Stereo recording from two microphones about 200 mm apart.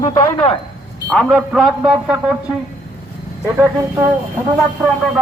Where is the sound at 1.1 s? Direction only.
5° left (ahead or behind).